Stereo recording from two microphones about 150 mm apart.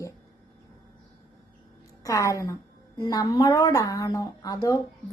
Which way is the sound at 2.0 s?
20° left (ahead or behind).